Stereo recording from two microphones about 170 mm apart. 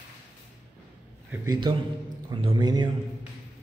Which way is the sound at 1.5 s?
25° right (ahead or behind).